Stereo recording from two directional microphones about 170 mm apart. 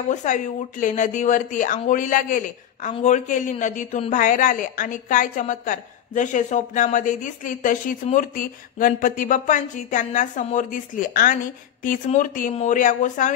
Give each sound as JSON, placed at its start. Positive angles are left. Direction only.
{"t": 0.1, "sound": "a woman's voice", "side_deg": 45}